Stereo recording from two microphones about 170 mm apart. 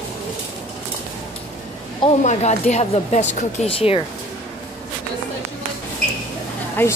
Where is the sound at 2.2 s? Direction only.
45° left (ahead or behind).